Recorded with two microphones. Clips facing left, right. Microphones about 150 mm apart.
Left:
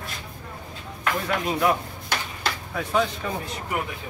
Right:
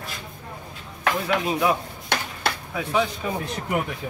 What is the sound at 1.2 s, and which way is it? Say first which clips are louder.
Speech: even; 5° right (ahead or behind).